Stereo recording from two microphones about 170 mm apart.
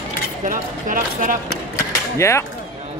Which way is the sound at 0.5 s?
50° right (ahead or behind).